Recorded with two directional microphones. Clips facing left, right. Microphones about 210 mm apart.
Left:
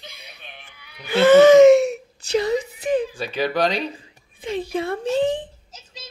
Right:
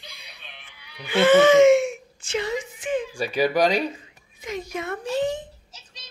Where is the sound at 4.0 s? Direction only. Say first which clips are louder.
Left 6 dB; 30° left (ahead or behind).